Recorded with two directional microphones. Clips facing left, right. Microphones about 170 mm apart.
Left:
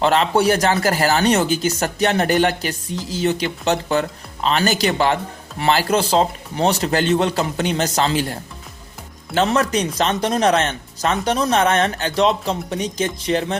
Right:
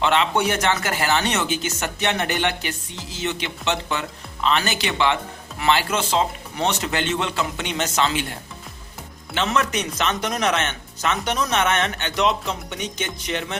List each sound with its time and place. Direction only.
0.0 s speech: 40° left (ahead or behind)